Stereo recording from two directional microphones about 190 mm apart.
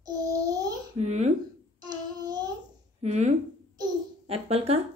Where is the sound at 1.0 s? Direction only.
35° right (ahead or behind).